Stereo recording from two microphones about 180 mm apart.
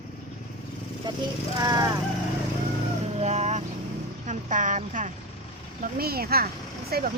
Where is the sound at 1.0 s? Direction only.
20° right (ahead or behind).